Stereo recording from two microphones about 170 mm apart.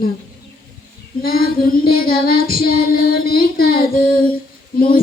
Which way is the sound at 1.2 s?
60° left (ahead or behind).